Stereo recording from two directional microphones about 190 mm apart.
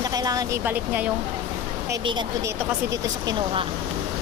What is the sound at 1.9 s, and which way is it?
Speech, 25° right (ahead or behind).